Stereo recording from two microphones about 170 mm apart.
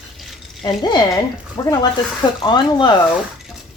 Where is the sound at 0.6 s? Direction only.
25° left (ahead or behind).